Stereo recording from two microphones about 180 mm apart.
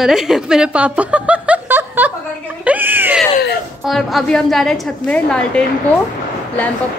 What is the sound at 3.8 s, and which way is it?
Speech, centre (ahead or behind).